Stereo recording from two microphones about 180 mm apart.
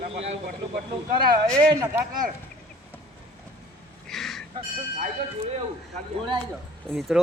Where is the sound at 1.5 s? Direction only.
5° left (ahead or behind).